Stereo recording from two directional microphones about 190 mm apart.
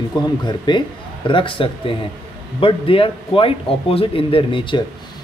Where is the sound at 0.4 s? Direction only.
25° left (ahead or behind).